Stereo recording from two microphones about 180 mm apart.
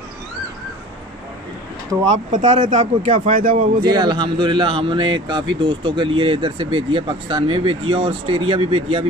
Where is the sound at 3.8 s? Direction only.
25° right (ahead or behind).